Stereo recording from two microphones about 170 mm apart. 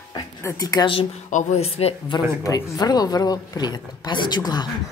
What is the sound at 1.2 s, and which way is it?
Speech, 45° left (ahead or behind).